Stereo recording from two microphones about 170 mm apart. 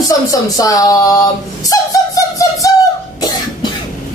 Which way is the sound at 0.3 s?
20° left (ahead or behind).